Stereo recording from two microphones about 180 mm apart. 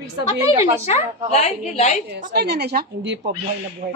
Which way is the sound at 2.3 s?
65° right (ahead or behind).